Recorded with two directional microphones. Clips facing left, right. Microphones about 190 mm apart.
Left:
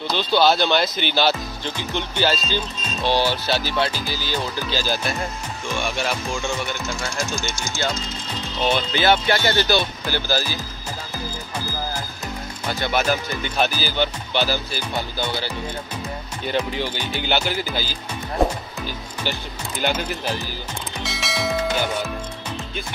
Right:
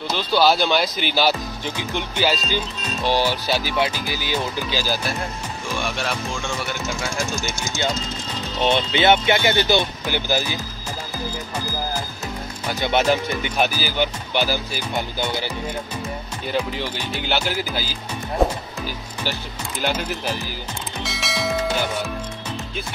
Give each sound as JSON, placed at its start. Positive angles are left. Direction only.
{"t": 0.1, "sound": "speech", "side_deg": -5}
{"t": 8.6, "sound": "speech", "side_deg": -25}
{"t": 12.9, "sound": "speech", "side_deg": -25}
{"t": 16.4, "sound": "speech", "side_deg": 0}
{"t": 21.0, "sound": "music", "side_deg": 0}